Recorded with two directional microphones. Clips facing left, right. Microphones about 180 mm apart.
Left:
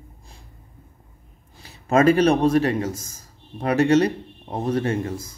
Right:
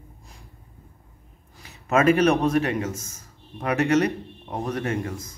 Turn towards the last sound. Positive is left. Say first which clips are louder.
# left 3 dB
turn(degrees=30)  # may be behind; listen again after turning